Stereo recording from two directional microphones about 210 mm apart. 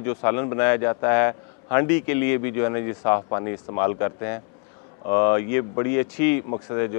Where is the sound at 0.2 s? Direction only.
20° left (ahead or behind).